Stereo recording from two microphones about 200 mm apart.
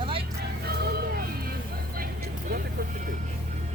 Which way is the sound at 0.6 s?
50° right (ahead or behind).